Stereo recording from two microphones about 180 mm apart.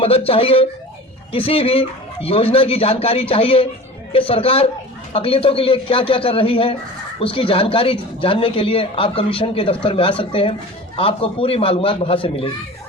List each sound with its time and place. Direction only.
0.0 s speech: 30° left (ahead or behind)